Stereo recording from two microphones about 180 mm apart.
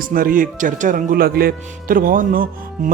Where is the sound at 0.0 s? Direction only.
50° right (ahead or behind).